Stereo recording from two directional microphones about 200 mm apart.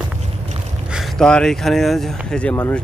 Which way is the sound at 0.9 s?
Centre (ahead or behind).